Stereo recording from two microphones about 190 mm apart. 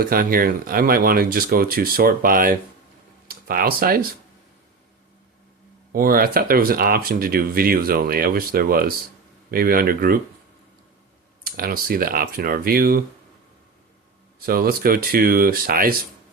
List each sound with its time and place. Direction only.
0.0 s speech: 50° right (ahead or behind)
5.9 s speech: 50° right (ahead or behind)
11.4 s speech: 50° right (ahead or behind)
14.3 s speech: 50° right (ahead or behind)